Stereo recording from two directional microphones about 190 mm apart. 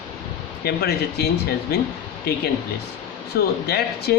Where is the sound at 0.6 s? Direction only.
55° left (ahead or behind).